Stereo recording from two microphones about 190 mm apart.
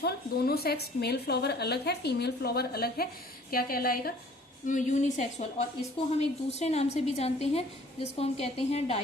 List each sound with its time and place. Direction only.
0.0 s a woman's voice: 55° left (ahead or behind); by 9.0 s 30° left (ahead or behind)